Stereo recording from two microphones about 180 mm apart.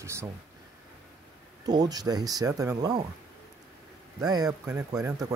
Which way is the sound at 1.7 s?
20° right (ahead or behind).